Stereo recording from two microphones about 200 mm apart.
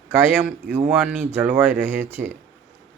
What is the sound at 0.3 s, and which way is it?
Speech, 10° right (ahead or behind).